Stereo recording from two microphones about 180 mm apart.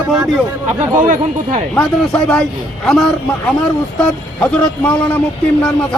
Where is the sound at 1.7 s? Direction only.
5° left (ahead or behind).